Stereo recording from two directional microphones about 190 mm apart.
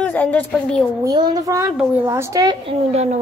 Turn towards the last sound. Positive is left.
turn(degrees=-35)  # may be behind; listen again after turning